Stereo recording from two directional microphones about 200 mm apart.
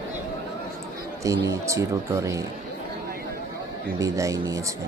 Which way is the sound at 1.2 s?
15° right (ahead or behind).